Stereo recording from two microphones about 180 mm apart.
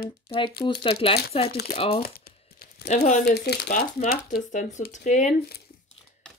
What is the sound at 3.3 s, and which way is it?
Speech, 65° left (ahead or behind).